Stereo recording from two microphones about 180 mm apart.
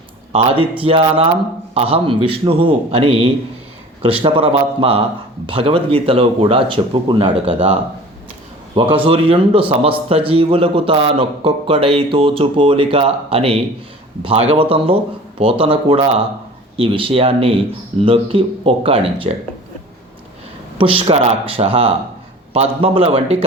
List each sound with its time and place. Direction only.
0.3 s speech: 30° right (ahead or behind)
9.0 s speech: 30° right (ahead or behind)
20.7 s speech: 30° right (ahead or behind)